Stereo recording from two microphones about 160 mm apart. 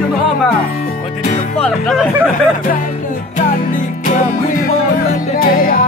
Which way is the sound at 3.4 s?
55° left (ahead or behind).